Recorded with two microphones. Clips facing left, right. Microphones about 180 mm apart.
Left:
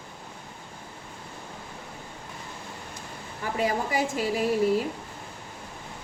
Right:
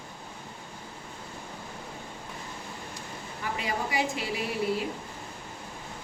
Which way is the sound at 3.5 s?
45° left (ahead or behind).